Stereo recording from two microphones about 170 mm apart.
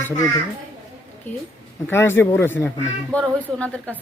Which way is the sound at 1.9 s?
15° left (ahead or behind).